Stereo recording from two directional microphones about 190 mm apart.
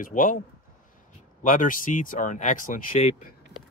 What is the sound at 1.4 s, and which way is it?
Speech, 45° left (ahead or behind).